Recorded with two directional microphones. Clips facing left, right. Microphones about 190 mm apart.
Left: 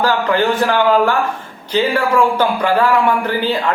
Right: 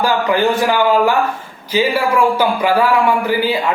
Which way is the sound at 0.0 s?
10° right (ahead or behind).